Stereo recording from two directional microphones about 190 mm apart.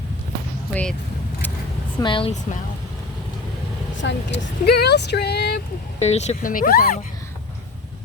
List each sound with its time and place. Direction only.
0.7 s speech: 5° left (ahead or behind)
2.0 s speech: 25° left (ahead or behind)
4.0 s speech: 60° left (ahead or behind)
6.0 s speech: 35° left (ahead or behind)